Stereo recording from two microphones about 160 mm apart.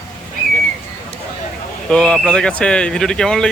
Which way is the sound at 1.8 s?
5° left (ahead or behind).